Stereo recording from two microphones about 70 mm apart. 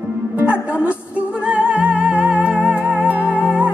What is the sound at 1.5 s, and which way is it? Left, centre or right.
Music, centre.